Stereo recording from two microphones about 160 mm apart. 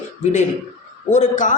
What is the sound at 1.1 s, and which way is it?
Speech, 50° left (ahead or behind).